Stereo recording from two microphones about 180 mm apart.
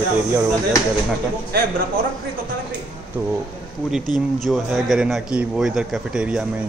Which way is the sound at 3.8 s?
Centre (ahead or behind).